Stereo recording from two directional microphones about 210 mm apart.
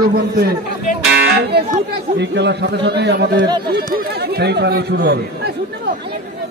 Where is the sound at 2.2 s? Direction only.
55° right (ahead or behind).